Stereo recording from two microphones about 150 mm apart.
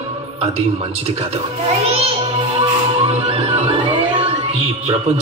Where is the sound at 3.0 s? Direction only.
40° right (ahead or behind).